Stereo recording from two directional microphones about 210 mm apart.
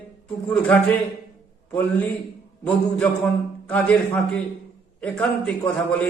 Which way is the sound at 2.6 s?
5° left (ahead or behind).